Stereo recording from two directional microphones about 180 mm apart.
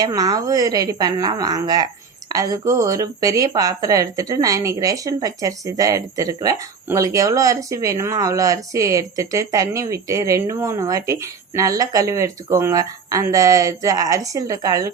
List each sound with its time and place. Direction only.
0.0 s speech: 20° right (ahead or behind)